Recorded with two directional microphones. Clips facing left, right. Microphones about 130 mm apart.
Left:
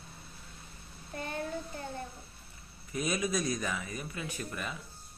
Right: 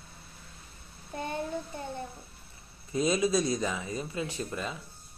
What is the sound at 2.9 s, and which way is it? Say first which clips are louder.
Speech: right 6 dB; 25° right (ahead or behind).